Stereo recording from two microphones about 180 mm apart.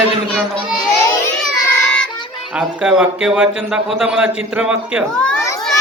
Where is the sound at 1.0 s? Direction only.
15° left (ahead or behind).